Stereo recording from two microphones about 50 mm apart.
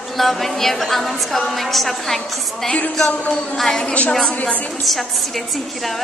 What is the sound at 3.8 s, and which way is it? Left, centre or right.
Speech, left.